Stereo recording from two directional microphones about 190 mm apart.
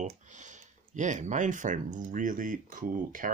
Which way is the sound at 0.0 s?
40° right (ahead or behind).